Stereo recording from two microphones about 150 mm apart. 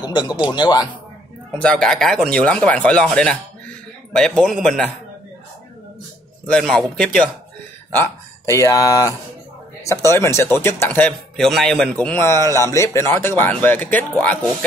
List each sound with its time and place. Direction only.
0.0 s speech: 30° left (ahead or behind)
1.5 s speech: 5° left (ahead or behind)
6.4 s speech: 5° left (ahead or behind)
7.9 s speech: 20° left (ahead or behind)